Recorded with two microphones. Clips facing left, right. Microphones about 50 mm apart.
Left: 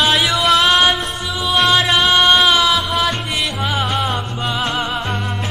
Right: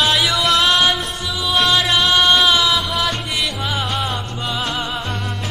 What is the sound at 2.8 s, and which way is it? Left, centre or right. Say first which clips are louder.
Music: left 2 dB; centre.